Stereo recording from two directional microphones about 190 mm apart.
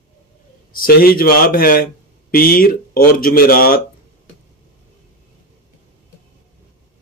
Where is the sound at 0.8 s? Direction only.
50° left (ahead or behind).